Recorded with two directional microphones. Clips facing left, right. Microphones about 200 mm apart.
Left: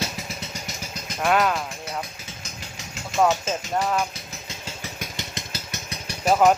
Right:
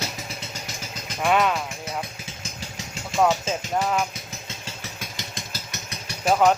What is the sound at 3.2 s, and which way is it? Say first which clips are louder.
Speech: even; centre (ahead or behind).